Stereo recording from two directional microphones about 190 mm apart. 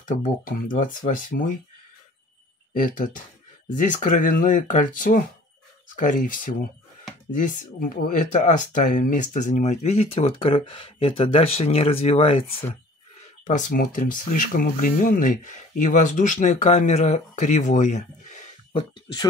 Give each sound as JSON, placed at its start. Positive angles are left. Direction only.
{"t": 0.2, "sound": "speech", "side_deg": 45}
{"t": 2.7, "sound": "speech", "side_deg": 45}
{"t": 13.5, "sound": "speech", "side_deg": 45}